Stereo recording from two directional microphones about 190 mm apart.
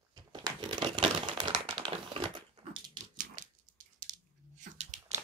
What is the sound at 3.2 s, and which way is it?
Dog, 45° right (ahead or behind).